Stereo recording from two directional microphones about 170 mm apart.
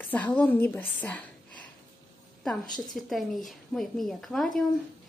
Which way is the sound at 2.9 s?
Centre (ahead or behind).